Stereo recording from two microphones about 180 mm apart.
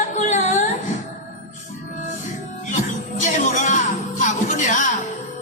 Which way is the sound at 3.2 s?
45° left (ahead or behind).